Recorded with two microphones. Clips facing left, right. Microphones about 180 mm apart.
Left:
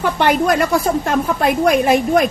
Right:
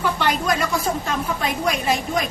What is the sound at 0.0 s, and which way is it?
A woman's voice, 55° left (ahead or behind).